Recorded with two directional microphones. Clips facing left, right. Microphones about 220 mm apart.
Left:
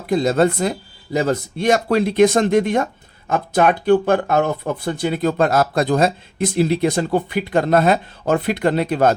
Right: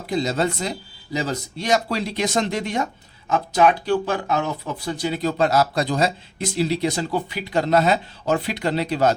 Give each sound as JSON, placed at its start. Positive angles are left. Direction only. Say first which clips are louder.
{"t": 0.1, "sound": "speech", "louder": "left 6 dB", "side_deg": 55}